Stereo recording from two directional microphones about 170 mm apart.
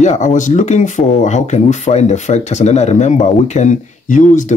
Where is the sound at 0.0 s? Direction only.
45° left (ahead or behind).